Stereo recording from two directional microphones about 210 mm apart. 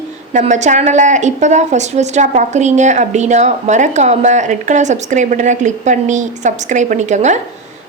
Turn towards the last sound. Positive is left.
turn(degrees=-35)  # may be behind; listen again after turning